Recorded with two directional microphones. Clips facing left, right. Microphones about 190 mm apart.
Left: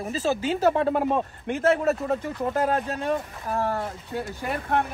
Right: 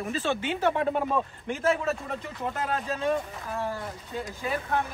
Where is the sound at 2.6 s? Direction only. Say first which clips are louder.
Left 5 dB; 45° left (ahead or behind).